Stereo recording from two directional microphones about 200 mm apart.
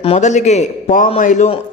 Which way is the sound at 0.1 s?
35° left (ahead or behind).